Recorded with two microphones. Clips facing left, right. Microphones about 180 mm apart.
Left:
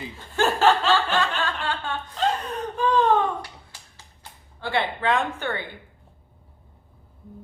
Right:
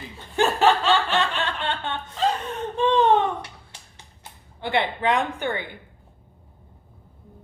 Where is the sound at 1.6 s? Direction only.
25° right (ahead or behind).